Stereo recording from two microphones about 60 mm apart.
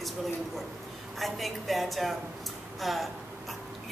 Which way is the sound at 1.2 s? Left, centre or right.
Centre.